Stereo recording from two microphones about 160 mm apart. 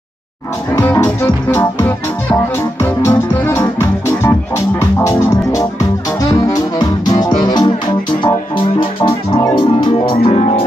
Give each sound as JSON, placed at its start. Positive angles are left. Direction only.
{"t": 0.7, "sound": "music", "side_deg": 15}
{"t": 8.7, "sound": "music", "side_deg": 35}